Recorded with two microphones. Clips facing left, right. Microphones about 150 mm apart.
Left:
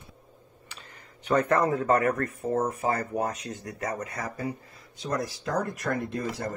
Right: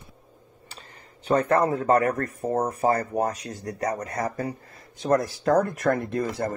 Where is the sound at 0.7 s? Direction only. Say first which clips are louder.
Right 2 dB; 30° right (ahead or behind).